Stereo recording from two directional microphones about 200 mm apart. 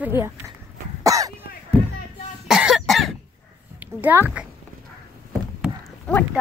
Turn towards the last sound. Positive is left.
turn(degrees=5)  # may be behind; listen again after turning